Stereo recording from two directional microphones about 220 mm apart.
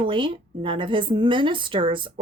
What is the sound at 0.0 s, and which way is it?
Speech, 20° right (ahead or behind).